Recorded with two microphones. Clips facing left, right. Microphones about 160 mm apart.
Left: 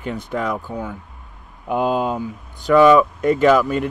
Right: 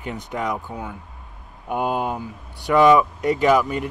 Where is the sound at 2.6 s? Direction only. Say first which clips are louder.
Left 3 dB; 15° right (ahead or behind).